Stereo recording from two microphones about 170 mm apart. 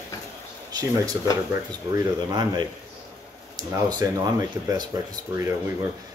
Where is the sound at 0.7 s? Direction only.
20° right (ahead or behind).